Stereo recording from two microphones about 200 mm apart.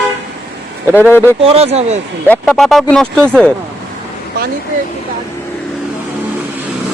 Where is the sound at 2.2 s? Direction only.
5° left (ahead or behind).